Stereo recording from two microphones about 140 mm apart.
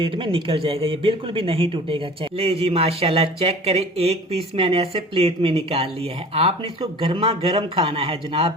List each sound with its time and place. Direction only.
0.0 s speech: 40° right (ahead or behind)